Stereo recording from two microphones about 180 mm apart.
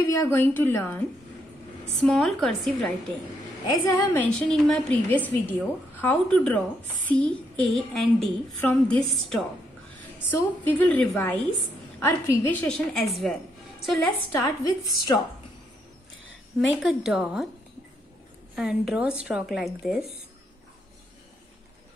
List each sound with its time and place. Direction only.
0.1 s a woman's voice: 15° left (ahead or behind)
2.0 s a woman's voice: centre (ahead or behind)
3.7 s a woman's voice: 15° left (ahead or behind); by 14.0 s centre (ahead or behind)
14.3 s a woman's voice: 20° left (ahead or behind)
16.8 s a woman's voice: 5° right (ahead or behind)
18.6 s a woman's voice: 5° right (ahead or behind)